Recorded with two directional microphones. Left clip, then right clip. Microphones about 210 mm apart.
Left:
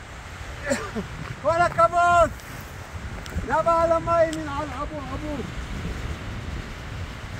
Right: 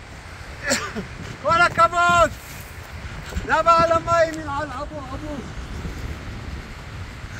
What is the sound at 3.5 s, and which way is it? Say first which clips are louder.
A man's voice: right 4 dB; 10° right (ahead or behind).